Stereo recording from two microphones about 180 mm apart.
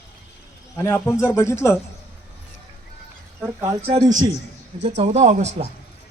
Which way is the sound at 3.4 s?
10° right (ahead or behind).